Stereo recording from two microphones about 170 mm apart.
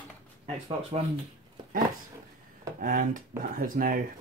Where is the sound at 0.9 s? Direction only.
35° right (ahead or behind).